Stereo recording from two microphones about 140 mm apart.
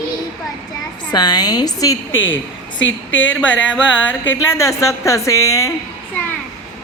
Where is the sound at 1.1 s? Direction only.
30° left (ahead or behind).